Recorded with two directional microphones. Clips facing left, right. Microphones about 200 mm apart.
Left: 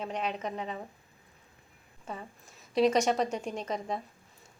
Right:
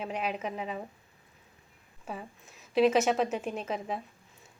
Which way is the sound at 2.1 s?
10° right (ahead or behind).